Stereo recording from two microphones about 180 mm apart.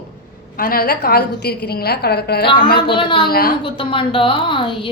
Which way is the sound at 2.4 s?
25° left (ahead or behind).